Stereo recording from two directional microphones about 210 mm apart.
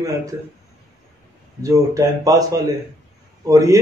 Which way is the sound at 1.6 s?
15° right (ahead or behind).